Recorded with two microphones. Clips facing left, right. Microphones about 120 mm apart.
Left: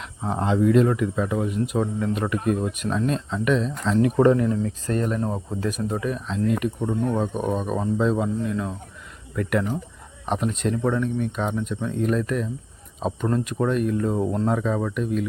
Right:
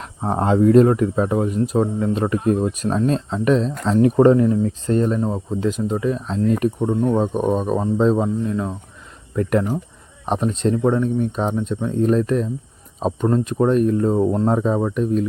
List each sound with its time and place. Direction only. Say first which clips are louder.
0.0 s speech: right 5 dB; 45° right (ahead or behind)